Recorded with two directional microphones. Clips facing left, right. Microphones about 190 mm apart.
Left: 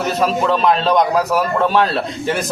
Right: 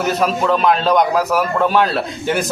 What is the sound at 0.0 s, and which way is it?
A man's voice, centre (ahead or behind).